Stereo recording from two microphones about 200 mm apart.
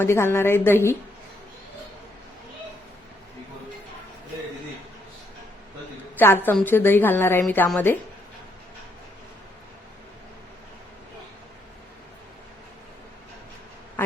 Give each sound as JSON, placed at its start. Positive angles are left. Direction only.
{"t": 0.0, "sound": "a woman's voice", "side_deg": 10}
{"t": 6.1, "sound": "a woman's voice", "side_deg": 10}